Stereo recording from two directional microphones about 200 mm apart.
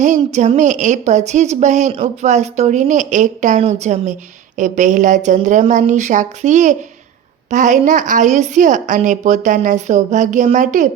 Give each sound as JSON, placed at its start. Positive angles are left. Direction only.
{"t": 0.0, "sound": "a woman's voice", "side_deg": -35}